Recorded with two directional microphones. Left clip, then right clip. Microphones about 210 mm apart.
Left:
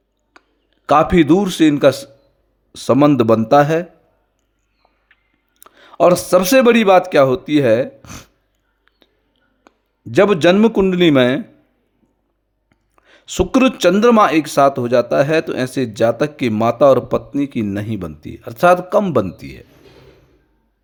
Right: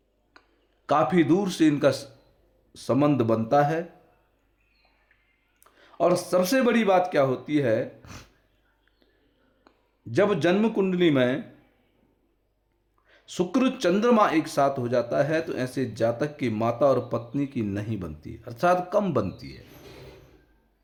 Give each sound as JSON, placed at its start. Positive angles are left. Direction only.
{"t": 0.4, "sound": "a sound", "side_deg": 30}
{"t": 0.9, "sound": "a man's voice", "side_deg": 40}
{"t": 5.5, "sound": "speech", "side_deg": 45}
{"t": 9.6, "sound": "a man's voice", "side_deg": 40}
{"t": 13.1, "sound": "speech", "side_deg": 45}